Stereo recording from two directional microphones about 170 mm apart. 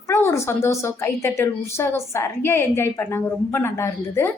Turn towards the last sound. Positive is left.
turn(degrees=15)  # may be behind; listen again after turning